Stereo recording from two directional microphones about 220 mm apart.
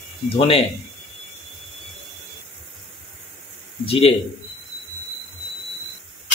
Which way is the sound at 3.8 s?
25° left (ahead or behind).